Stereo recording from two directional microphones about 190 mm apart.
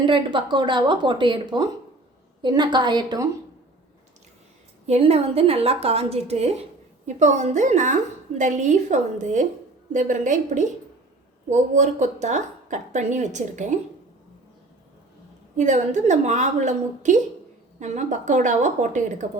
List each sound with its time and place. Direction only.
0.0 s speech: 25° right (ahead or behind)
4.9 s a woman's voice: 30° right (ahead or behind)
15.5 s a woman's voice: 40° right (ahead or behind)